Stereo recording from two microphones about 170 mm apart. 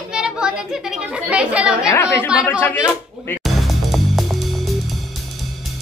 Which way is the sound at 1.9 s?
15° left (ahead or behind).